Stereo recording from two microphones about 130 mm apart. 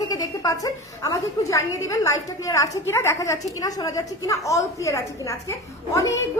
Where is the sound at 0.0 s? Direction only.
30° left (ahead or behind).